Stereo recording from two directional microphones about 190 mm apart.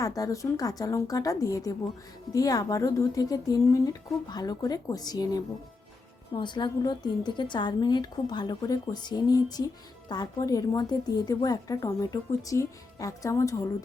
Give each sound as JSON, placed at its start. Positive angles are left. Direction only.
{"t": 0.0, "sound": "a woman's voice", "side_deg": 20}